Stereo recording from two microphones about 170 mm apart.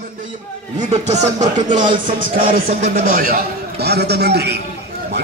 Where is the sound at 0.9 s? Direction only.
40° right (ahead or behind).